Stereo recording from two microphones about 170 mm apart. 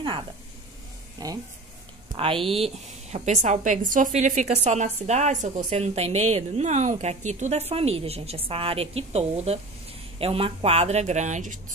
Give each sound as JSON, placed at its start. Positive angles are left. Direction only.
{"t": 1.2, "sound": "a woman's voice", "side_deg": -20}